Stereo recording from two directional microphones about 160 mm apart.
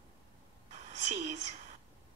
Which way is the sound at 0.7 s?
45° right (ahead or behind).